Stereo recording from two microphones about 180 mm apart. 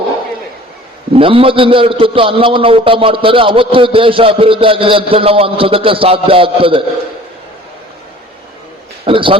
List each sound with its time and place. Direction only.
1.1 s a man's voice: 30° right (ahead or behind)
9.0 s a man's voice: 30° right (ahead or behind)